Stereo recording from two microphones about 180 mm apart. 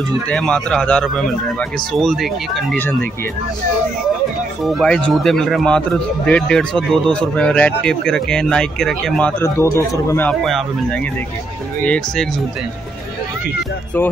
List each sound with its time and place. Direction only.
0.3 s speech: 5° left (ahead or behind)
4.6 s speech: centre (ahead or behind)
9.4 s speech: 15° left (ahead or behind)
10.4 s speech: centre (ahead or behind)